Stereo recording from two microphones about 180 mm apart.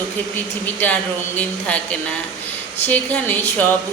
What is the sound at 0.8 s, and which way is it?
Speech, 10° left (ahead or behind).